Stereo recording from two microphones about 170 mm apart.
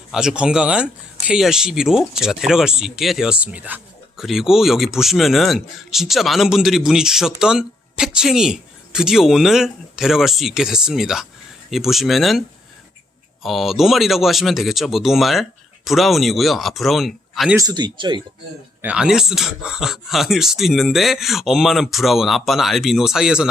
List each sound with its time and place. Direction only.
0.1 s speech: 5° right (ahead or behind)
13.4 s speech: centre (ahead or behind)
17.6 s speech: 25° right (ahead or behind)
18.8 s speech: 5° right (ahead or behind)